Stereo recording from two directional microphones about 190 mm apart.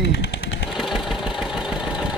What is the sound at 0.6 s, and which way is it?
Engine, centre (ahead or behind).